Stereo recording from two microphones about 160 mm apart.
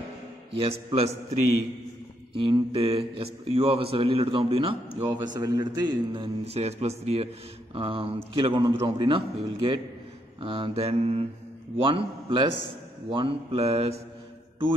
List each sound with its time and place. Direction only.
0.6 s a man's voice: 35° right (ahead or behind)
2.3 s a man's voice: 35° right (ahead or behind)
5.0 s a man's voice: 25° right (ahead or behind)
6.4 s a man's voice: 40° right (ahead or behind)